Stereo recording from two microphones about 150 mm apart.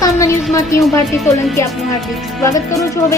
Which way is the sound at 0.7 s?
20° left (ahead or behind).